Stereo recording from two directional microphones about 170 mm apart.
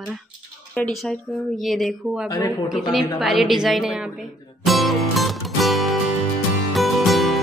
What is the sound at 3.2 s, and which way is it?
Speech, centre (ahead or behind).